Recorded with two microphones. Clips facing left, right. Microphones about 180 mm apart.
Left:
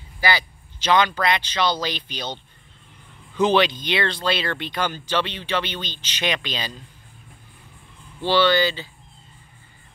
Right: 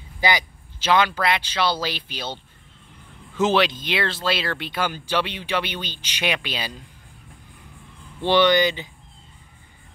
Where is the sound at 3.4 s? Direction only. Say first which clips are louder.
Left 1 dB; centre (ahead or behind).